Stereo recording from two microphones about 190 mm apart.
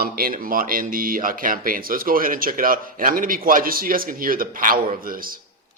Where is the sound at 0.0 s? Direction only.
50° right (ahead or behind).